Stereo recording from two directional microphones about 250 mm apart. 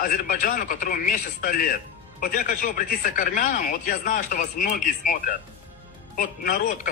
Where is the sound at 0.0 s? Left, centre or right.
Left.